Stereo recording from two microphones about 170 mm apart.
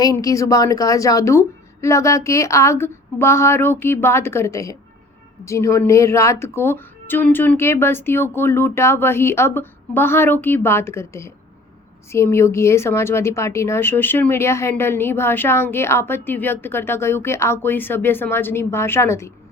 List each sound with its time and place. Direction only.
0.0 s a woman's voice: 20° left (ahead or behind)